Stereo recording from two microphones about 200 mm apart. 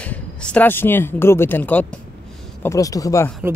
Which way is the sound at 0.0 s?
5° left (ahead or behind).